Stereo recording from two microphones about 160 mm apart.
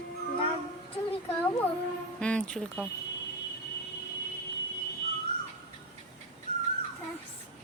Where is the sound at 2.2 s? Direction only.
5° left (ahead or behind).